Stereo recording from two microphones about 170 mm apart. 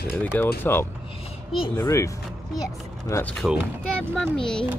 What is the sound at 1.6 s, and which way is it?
Speech, 15° left (ahead or behind).